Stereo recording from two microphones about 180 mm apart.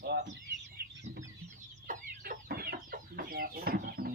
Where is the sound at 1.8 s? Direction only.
50° right (ahead or behind).